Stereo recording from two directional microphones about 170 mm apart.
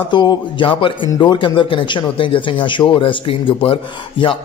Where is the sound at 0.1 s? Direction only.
25° left (ahead or behind).